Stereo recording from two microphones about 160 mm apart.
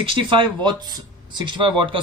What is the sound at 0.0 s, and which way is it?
Speech, 30° right (ahead or behind).